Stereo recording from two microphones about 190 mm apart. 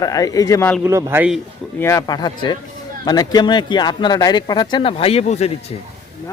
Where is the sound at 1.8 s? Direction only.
15° left (ahead or behind); by 5.5 s 35° left (ahead or behind).